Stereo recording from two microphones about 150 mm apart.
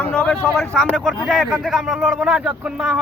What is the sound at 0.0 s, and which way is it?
Speech, 5° left (ahead or behind).